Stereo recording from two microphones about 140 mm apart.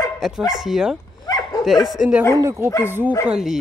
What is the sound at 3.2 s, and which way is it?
Speech, 5° right (ahead or behind).